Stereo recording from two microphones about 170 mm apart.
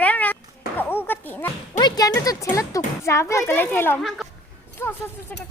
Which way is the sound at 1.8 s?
20° left (ahead or behind).